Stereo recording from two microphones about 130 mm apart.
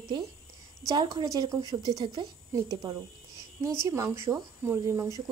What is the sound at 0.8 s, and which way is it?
Speech, 35° right (ahead or behind).